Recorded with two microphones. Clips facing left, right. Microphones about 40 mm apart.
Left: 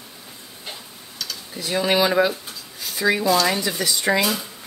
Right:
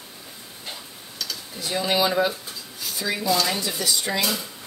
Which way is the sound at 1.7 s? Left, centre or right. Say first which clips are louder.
Left 4 dB; centre.